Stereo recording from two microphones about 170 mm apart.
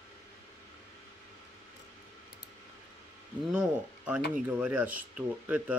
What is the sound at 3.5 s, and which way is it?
Speech, 5° right (ahead or behind).